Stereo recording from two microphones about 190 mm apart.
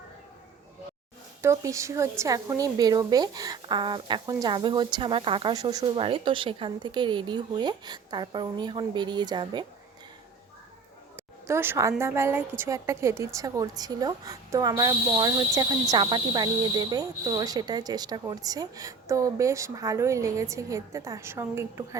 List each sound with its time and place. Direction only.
1.4 s speech: 15° right (ahead or behind)
11.2 s a woman's voice: 15° right (ahead or behind)